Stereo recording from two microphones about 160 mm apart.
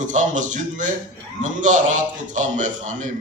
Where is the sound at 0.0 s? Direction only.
50° right (ahead or behind).